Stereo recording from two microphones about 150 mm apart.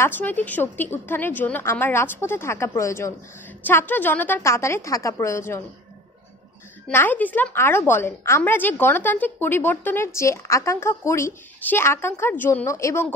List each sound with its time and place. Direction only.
0.0 s a woman's voice: 10° left (ahead or behind)
6.9 s a woman's voice: 15° left (ahead or behind)